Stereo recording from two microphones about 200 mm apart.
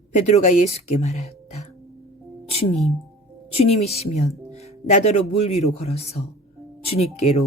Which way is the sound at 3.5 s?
30° left (ahead or behind).